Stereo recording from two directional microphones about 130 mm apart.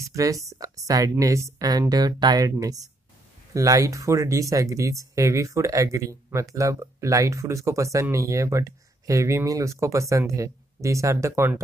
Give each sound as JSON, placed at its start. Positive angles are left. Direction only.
{"t": 0.0, "sound": "speech", "side_deg": -25}